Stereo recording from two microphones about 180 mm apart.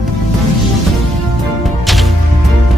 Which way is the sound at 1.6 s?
Centre (ahead or behind).